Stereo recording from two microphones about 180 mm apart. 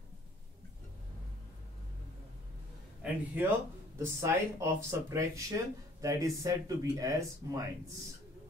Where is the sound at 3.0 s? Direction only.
10° right (ahead or behind).